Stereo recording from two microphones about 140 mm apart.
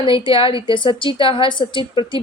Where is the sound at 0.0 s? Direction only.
40° left (ahead or behind).